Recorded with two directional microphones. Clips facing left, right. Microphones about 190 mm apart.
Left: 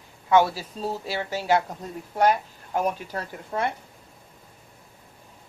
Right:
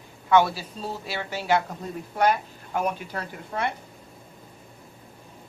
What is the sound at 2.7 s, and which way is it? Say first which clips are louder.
Speech: left 1 dB; 35° left (ahead or behind).